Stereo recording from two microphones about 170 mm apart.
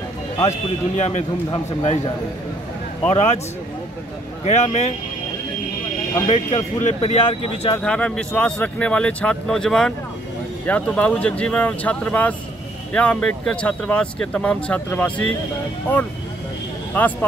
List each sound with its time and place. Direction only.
0.4 s a man's voice: 40° left (ahead or behind)
4.5 s a man's voice: 40° left (ahead or behind)
6.2 s a man's voice: 40° left (ahead or behind)
7.2 s speech: 25° left (ahead or behind)
7.8 s speech: 5° left (ahead or behind)
17.0 s speech: 10° left (ahead or behind)